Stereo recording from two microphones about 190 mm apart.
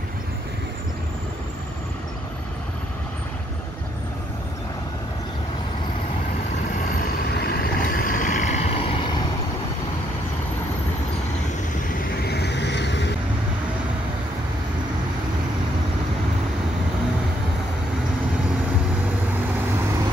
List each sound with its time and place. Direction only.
7.3 s vehicle: 55° left (ahead or behind); by 8.8 s 35° left (ahead or behind)
12.3 s vehicle: 60° left (ahead or behind)